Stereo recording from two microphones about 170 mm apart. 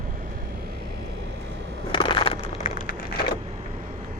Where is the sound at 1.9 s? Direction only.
30° left (ahead or behind).